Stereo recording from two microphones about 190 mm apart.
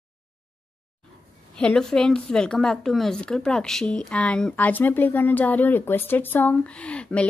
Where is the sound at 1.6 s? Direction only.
5° left (ahead or behind).